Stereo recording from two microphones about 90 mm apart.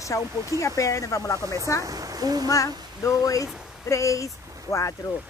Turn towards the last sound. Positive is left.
turn(degrees=35)  # may be behind; listen again after turning